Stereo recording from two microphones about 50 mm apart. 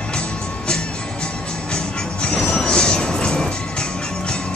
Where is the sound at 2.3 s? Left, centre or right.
Centre.